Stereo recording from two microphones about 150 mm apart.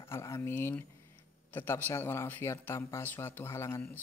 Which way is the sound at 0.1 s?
20° left (ahead or behind).